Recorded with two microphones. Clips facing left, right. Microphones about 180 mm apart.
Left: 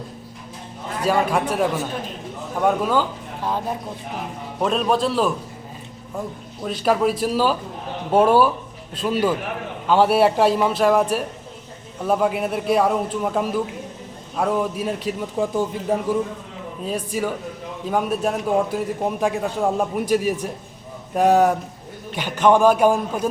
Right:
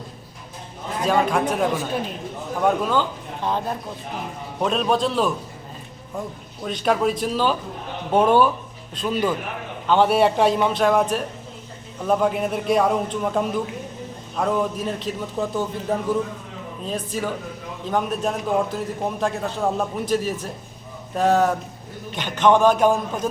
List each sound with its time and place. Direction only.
1.0 s a man's voice: 5° left (ahead or behind)
2.8 s a man's voice: 5° left (ahead or behind)
6.7 s a man's voice: 5° left (ahead or behind)